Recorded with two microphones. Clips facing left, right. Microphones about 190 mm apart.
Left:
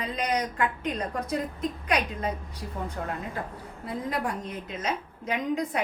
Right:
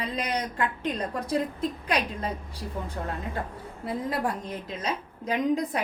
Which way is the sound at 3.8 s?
30° right (ahead or behind).